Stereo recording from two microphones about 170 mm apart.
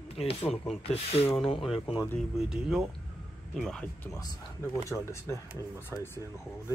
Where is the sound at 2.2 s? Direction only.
5° right (ahead or behind).